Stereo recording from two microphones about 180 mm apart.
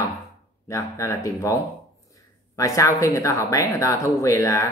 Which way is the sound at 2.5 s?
15° left (ahead or behind).